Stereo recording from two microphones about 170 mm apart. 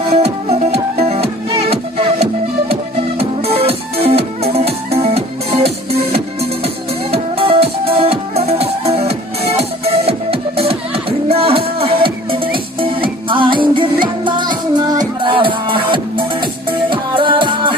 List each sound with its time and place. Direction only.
0.1 s music: 35° right (ahead or behind)